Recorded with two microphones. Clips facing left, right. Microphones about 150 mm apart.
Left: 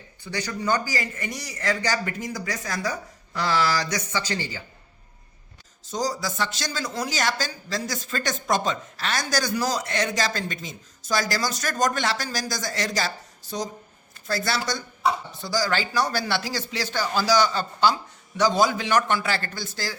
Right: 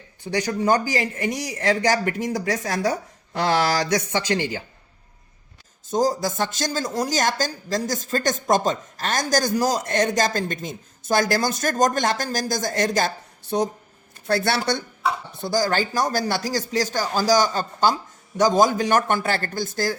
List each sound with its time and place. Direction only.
0.4 s speech: 45° right (ahead or behind)
4.3 s speech: 65° right (ahead or behind)
5.9 s speech: 50° right (ahead or behind)